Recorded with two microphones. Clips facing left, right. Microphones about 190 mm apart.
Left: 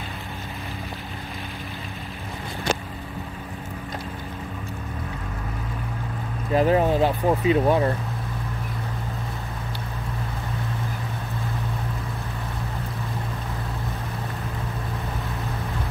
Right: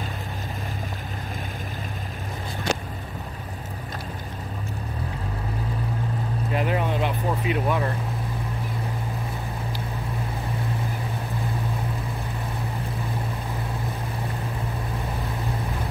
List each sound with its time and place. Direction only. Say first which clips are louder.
6.5 s speech: left 7 dB; 35° left (ahead or behind)